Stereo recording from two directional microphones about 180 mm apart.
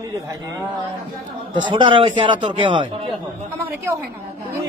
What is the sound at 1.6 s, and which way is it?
A man's voice, 25° right (ahead or behind).